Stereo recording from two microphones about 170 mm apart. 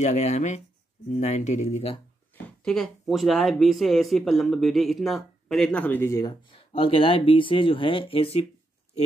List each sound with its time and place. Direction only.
0.0 s speech: 40° left (ahead or behind)
2.6 s speech: 5° left (ahead or behind)
6.5 s speech: 35° left (ahead or behind)